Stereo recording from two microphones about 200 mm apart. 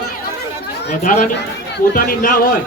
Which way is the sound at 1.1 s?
40° left (ahead or behind).